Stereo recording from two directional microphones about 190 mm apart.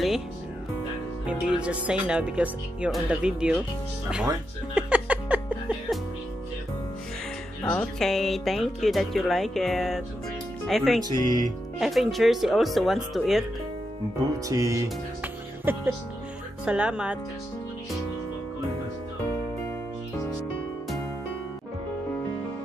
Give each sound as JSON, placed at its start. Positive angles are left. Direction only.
{"t": 1.2, "sound": "speech", "side_deg": -5}
{"t": 4.7, "sound": "music", "side_deg": -5}
{"t": 7.6, "sound": "speech", "side_deg": 5}
{"t": 11.1, "sound": "speech", "side_deg": 20}
{"t": 11.8, "sound": "speech", "side_deg": 0}
{"t": 14.5, "sound": "music", "side_deg": -15}
{"t": 16.6, "sound": "speech", "side_deg": -5}